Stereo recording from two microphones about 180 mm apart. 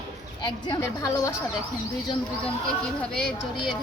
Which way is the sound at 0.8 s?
15° left (ahead or behind).